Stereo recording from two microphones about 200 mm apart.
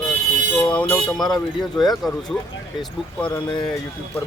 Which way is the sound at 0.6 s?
5° left (ahead or behind).